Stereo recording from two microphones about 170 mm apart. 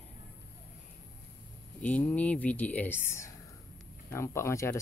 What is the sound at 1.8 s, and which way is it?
Speech, 10° left (ahead or behind).